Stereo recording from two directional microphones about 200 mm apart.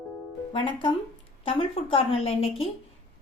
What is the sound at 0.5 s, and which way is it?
A woman's voice, 25° left (ahead or behind).